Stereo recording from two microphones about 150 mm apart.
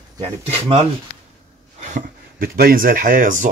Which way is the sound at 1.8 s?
50° right (ahead or behind).